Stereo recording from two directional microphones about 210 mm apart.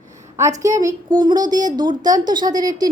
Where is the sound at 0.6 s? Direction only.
15° right (ahead or behind).